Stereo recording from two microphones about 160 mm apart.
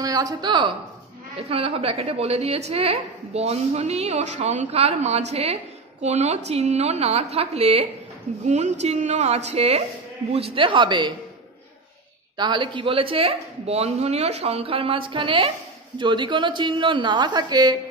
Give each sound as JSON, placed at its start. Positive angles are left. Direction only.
{"t": 0.0, "sound": "a woman's voice", "side_deg": -25}
{"t": 1.5, "sound": "a woman's voice", "side_deg": -35}
{"t": 12.4, "sound": "a woman's voice", "side_deg": -30}